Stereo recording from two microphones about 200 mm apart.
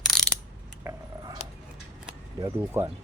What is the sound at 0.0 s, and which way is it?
Ratchet, centre (ahead or behind).